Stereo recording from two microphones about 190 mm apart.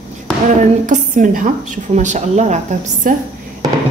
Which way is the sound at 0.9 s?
45° right (ahead or behind).